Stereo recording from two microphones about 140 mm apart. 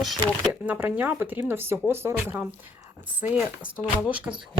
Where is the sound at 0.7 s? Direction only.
10° right (ahead or behind).